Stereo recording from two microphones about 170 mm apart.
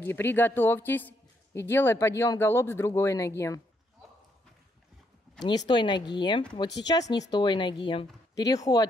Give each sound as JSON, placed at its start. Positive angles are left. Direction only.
{"t": 0.0, "sound": "speech", "side_deg": 10}
{"t": 5.7, "sound": "a woman's voice", "side_deg": 25}